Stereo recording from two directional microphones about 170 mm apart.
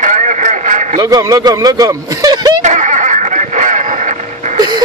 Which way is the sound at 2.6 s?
45° right (ahead or behind).